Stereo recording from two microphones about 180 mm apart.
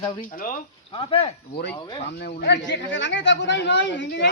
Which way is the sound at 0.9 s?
30° left (ahead or behind).